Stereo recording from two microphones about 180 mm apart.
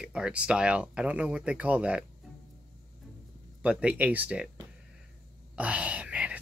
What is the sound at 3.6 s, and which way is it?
Speech, 5° right (ahead or behind).